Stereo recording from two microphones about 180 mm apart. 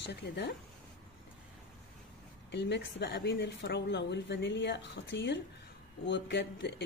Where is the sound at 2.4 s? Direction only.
75° left (ahead or behind).